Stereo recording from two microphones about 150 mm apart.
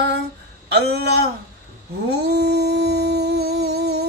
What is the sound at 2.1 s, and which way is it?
Humming, 90° right.